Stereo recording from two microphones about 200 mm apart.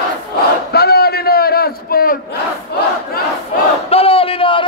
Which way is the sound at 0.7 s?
50° left (ahead or behind).